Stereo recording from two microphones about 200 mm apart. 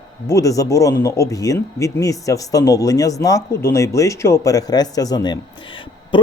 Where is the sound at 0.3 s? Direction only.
15° left (ahead or behind).